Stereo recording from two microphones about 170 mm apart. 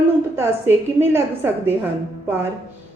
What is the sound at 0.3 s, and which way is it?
Speech, 15° right (ahead or behind).